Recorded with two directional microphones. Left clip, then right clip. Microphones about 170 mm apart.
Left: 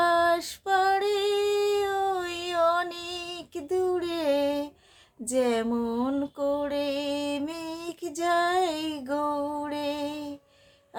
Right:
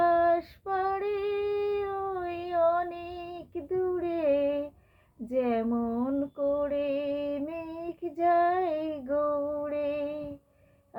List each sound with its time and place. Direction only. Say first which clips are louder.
0.0 s female singing: left 1 dB; 20° left (ahead or behind)
5.3 s music: left 3 dB; 20° left (ahead or behind)